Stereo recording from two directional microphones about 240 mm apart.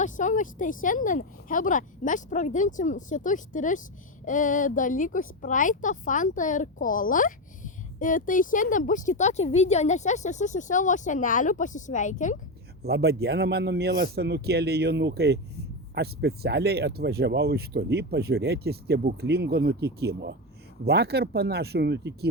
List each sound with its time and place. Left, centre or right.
0.0 s a woman's voice: left
12.8 s a man's voice: right